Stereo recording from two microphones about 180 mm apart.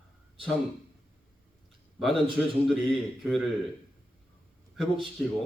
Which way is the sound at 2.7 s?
Centre (ahead or behind).